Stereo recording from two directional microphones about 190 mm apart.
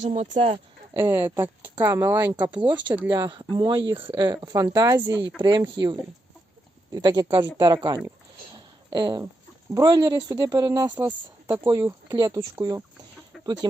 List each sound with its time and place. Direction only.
0.0 s speech: 40° right (ahead or behind)
0.9 s speech: 10° right (ahead or behind)
3.1 s speech: 20° right (ahead or behind)
8.5 s a sound: 25° right (ahead or behind)
9.7 s speech: 20° right (ahead or behind)
13.4 s chicken: 20° right (ahead or behind)